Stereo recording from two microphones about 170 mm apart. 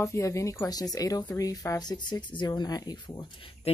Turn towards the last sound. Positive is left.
turn(degrees=30)  # may be behind; listen again after turning